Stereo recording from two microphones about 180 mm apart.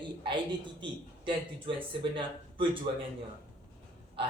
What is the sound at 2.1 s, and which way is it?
Speech, 30° right (ahead or behind).